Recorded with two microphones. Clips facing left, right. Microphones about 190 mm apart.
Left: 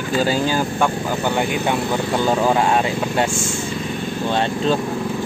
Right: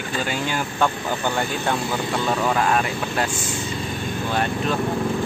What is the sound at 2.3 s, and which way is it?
Speech, 25° left (ahead or behind).